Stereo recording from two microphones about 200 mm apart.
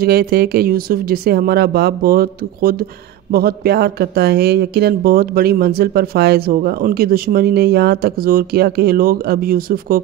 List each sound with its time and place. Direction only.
0.0 s speech: 50° right (ahead or behind)